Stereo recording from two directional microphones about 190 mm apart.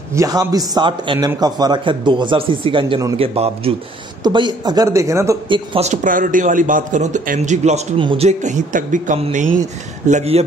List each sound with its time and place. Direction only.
0.1 s a man's voice: 15° right (ahead or behind)
8.3 s speech: 40° right (ahead or behind)